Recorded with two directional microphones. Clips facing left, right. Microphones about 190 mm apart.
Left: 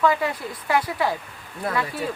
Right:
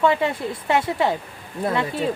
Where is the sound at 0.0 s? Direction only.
25° right (ahead or behind).